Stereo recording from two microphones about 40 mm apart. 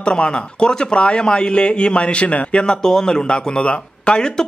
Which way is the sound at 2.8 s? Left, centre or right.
Centre.